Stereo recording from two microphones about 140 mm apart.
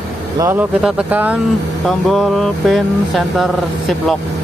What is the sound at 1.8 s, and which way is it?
Speech, centre (ahead or behind).